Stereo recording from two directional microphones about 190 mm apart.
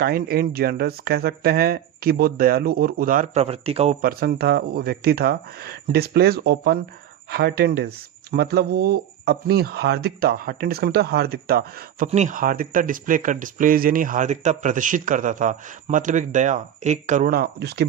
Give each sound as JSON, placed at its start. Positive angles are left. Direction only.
{"t": 0.0, "sound": "speech", "side_deg": -50}
{"t": 4.0, "sound": "speech", "side_deg": -55}
{"t": 12.0, "sound": "speech", "side_deg": -40}